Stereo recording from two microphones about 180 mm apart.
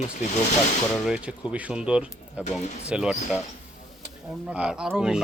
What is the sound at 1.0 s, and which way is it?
Speech, 5° right (ahead or behind).